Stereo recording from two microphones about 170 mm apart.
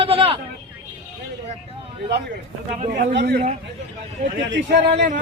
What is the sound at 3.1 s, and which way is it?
Speech, 75° right (ahead or behind).